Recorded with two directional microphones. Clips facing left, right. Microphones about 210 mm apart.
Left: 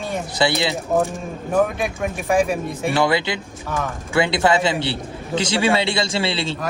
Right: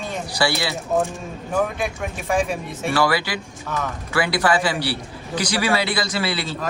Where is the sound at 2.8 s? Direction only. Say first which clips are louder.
Left 1 dB; 20° left (ahead or behind).